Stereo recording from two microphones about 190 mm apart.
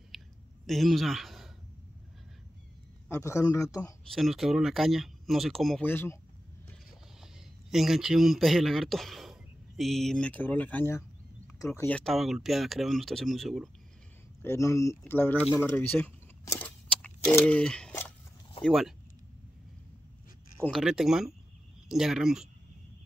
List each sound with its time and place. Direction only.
0.1 s a sound: centre (ahead or behind)
0.7 s speech: centre (ahead or behind)
3.1 s a man's voice: 15° left (ahead or behind)
4.1 s speech: centre (ahead or behind)
7.7 s a man's voice: centre (ahead or behind)
12.0 s speech: centre (ahead or behind)
14.4 s speech: 15° left (ahead or behind)
20.6 s speech: centre (ahead or behind)